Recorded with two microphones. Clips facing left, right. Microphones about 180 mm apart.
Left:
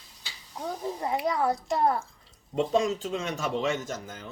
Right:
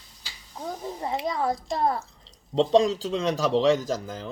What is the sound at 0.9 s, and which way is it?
Speech, 20° right (ahead or behind).